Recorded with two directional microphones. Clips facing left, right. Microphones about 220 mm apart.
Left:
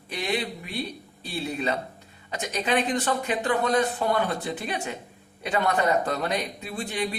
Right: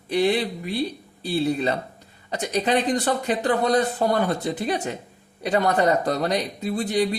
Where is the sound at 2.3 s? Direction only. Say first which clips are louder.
Right 4 dB; 40° right (ahead or behind).